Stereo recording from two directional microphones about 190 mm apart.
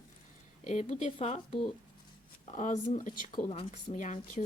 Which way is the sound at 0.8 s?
30° left (ahead or behind).